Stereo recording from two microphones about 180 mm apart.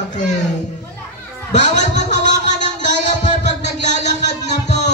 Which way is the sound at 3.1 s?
40° left (ahead or behind).